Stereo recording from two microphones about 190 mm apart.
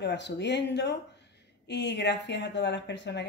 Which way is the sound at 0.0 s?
65° left (ahead or behind).